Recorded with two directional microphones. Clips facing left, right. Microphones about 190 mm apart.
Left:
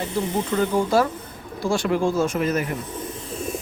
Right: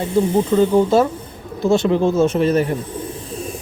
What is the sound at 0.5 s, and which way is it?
Speech, 20° right (ahead or behind).